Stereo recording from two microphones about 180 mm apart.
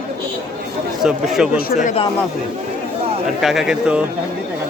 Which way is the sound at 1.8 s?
35° left (ahead or behind).